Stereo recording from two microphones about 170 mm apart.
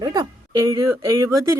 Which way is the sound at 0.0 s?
25° right (ahead or behind).